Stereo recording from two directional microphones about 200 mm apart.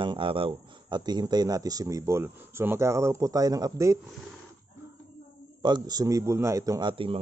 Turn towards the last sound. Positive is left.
turn(degrees=-25)  # may be behind; listen again after turning